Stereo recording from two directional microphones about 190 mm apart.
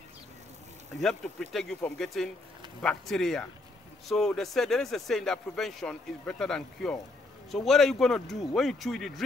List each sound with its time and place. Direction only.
1.0 s speech: centre (ahead or behind)